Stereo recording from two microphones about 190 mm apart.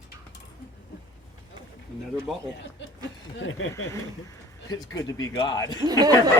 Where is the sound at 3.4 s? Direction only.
90° left.